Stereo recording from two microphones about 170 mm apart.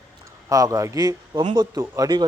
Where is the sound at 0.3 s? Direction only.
20° right (ahead or behind).